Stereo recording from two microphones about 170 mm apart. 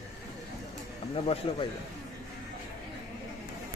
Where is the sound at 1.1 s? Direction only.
35° left (ahead or behind).